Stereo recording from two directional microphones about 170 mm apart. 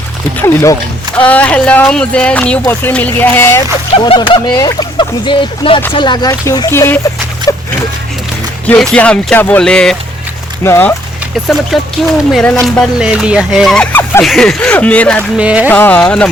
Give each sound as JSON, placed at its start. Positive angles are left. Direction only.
{"t": 0.4, "sound": "speech", "side_deg": 15}
{"t": 3.9, "sound": "speech", "side_deg": 30}
{"t": 8.6, "sound": "fowl", "side_deg": 5}
{"t": 10.6, "sound": "speech", "side_deg": 15}
{"t": 11.3, "sound": "fowl", "side_deg": 0}
{"t": 14.3, "sound": "speech", "side_deg": 0}
{"t": 15.4, "sound": "speech", "side_deg": -10}
{"t": 15.7, "sound": "speech", "side_deg": 10}